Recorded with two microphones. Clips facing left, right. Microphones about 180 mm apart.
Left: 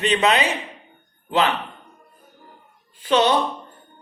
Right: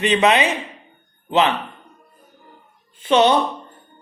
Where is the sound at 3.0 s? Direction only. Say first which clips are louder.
Right 3 dB; 25° right (ahead or behind).